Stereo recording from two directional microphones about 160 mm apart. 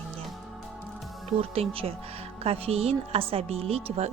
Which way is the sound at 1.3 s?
40° right (ahead or behind).